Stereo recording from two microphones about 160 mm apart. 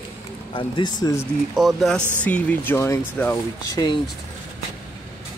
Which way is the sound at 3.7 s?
25° left (ahead or behind).